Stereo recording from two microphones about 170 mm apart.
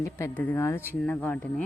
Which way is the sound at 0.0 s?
10° left (ahead or behind).